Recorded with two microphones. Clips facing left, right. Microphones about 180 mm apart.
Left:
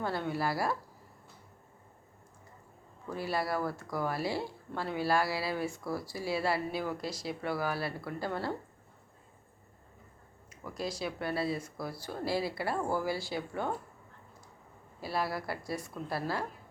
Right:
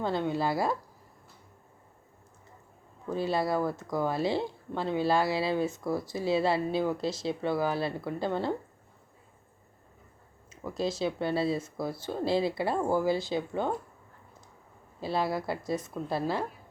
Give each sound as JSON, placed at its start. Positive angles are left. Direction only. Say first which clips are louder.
{"t": 0.0, "sound": "speech", "louder": "right 4 dB", "side_deg": -20}
{"t": 3.1, "sound": "speech", "louder": "right 5 dB", "side_deg": -25}
{"t": 10.5, "sound": "speech", "louder": "right 6 dB", "side_deg": -25}
{"t": 15.0, "sound": "speech", "louder": "right 4 dB", "side_deg": -25}